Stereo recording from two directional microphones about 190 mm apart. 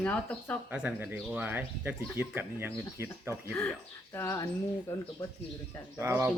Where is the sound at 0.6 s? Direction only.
10° right (ahead or behind).